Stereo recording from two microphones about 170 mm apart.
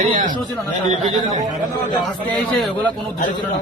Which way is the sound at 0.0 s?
50° right (ahead or behind).